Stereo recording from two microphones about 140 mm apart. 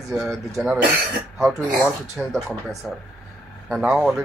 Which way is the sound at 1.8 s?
Centre (ahead or behind).